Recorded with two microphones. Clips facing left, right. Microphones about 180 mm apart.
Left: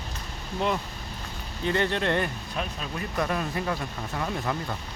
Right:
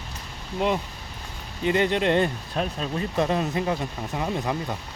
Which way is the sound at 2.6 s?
35° right (ahead or behind).